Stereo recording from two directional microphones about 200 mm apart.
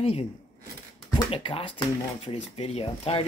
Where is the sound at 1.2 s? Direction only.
30° left (ahead or behind).